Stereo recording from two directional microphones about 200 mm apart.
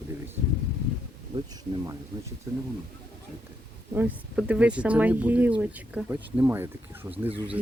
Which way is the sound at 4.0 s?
5° right (ahead or behind).